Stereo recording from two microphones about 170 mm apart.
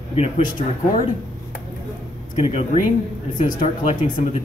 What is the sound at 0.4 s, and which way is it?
Speech, 50° left (ahead or behind).